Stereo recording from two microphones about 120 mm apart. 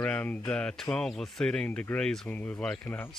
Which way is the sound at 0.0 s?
10° left (ahead or behind).